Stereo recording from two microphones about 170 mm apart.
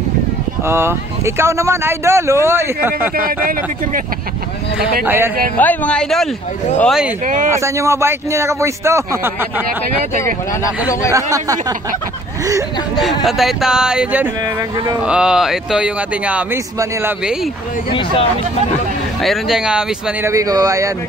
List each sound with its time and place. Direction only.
0.7 s speech: 15° right (ahead or behind)
3.2 s speech: 55° right (ahead or behind)
4.7 s speech: 10° right (ahead or behind)
5.6 s speech: 10° left (ahead or behind)
7.2 s speech: 50° right (ahead or behind)
7.5 s speech: 15° right (ahead or behind)
11.1 s speech: 20° right (ahead or behind)
13.2 s speech: centre (ahead or behind)
19.2 s speech: centre (ahead or behind)
20.2 s speech: 20° right (ahead or behind)